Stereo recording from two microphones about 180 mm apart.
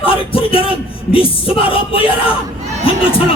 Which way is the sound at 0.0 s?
30° left (ahead or behind).